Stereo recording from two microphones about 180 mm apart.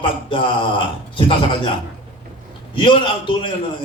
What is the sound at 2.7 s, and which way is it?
Speech, 25° left (ahead or behind).